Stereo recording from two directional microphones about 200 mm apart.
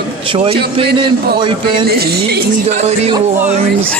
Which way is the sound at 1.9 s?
50° right (ahead or behind).